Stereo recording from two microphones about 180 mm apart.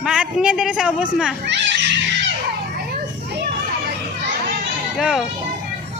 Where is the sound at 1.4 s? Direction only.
75° right (ahead or behind).